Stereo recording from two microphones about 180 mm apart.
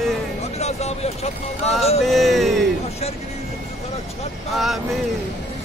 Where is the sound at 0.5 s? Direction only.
35° left (ahead or behind).